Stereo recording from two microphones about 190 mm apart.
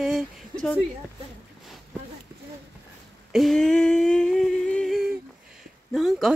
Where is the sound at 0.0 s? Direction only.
Centre (ahead or behind).